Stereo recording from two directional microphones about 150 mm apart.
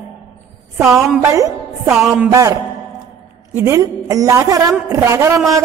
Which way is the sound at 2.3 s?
20° right (ahead or behind).